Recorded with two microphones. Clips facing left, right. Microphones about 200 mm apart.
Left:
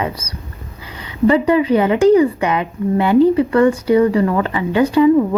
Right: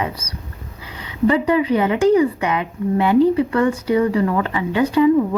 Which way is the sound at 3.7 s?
35° left (ahead or behind).